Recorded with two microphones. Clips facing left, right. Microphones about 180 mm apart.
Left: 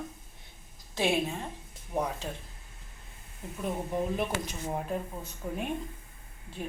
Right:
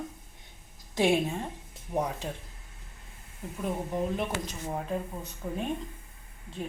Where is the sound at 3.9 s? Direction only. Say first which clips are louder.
Left 1 dB; 5° left (ahead or behind).